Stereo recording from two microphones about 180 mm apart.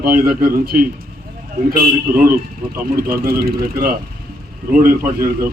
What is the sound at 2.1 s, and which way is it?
Speech, 55° right (ahead or behind).